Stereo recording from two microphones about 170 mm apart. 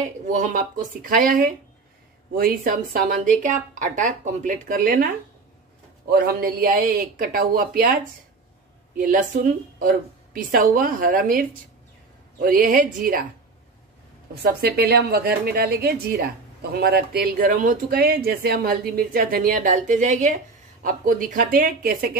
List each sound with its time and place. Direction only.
0.3 s speech: 45° right (ahead or behind)
14.4 s a woman's voice: 70° right (ahead or behind)